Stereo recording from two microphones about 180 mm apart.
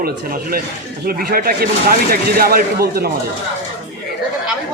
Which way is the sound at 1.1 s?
55° right (ahead or behind).